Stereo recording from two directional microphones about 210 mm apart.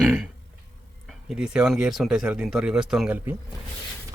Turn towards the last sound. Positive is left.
turn(degrees=-10)  # may be behind; listen again after turning